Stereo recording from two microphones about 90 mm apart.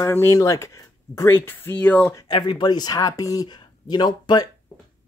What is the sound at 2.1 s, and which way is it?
Speech, 55° left (ahead or behind).